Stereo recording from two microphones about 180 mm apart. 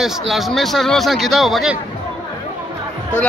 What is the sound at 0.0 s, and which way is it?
A man's voice, centre (ahead or behind).